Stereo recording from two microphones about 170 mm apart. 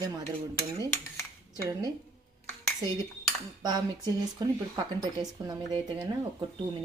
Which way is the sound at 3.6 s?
25° right (ahead or behind).